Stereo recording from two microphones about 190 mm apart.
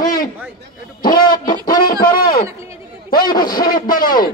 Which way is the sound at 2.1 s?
25° left (ahead or behind).